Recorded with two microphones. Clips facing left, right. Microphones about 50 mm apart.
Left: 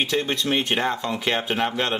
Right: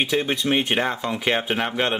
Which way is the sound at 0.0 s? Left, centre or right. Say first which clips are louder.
Right 1 dB; centre.